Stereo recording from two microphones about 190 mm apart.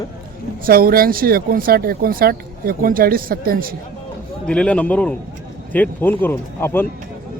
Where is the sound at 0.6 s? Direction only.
50° right (ahead or behind).